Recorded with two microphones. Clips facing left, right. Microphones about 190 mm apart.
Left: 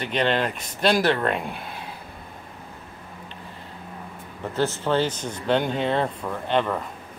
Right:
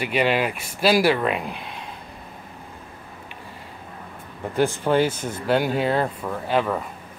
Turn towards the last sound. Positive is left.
turn(degrees=-5)  # may be behind; listen again after turning